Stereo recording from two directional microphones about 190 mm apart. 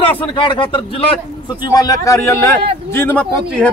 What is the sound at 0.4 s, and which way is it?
A man's voice, 25° left (ahead or behind).